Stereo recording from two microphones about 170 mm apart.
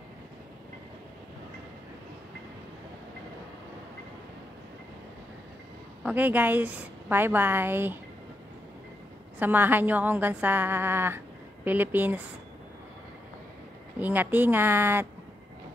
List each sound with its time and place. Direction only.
6.0 s a woman's voice: 10° right (ahead or behind)
9.4 s a woman's voice: 10° right (ahead or behind)
13.9 s a woman's voice: 10° right (ahead or behind)